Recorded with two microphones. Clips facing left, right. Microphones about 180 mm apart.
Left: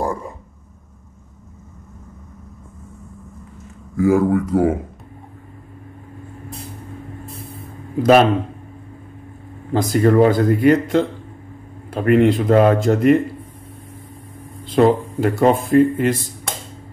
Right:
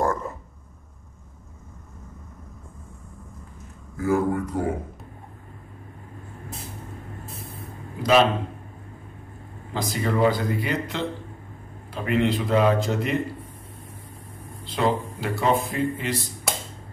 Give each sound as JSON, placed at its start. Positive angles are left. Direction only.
{"t": 0.0, "sound": "a sound", "side_deg": 15}
{"t": 3.9, "sound": "speech", "side_deg": 90}
{"t": 7.2, "sound": "vehicle", "side_deg": 0}
{"t": 8.0, "sound": "speech", "side_deg": 55}
{"t": 9.7, "sound": "speech", "side_deg": 50}
{"t": 14.6, "sound": "speech", "side_deg": 50}